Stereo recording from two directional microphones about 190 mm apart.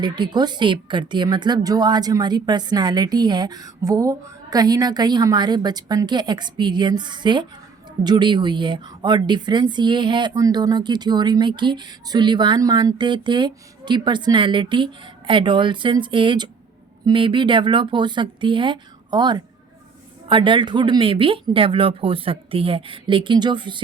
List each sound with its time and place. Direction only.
0.0 s a woman's voice: 20° right (ahead or behind)